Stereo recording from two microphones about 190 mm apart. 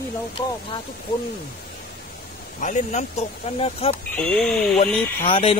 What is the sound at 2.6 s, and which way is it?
Speech, 40° left (ahead or behind).